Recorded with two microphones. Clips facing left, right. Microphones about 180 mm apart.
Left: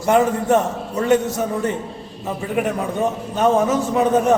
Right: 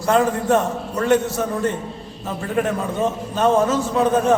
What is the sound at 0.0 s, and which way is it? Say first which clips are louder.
A man's voice: left 1 dB; 20° left (ahead or behind).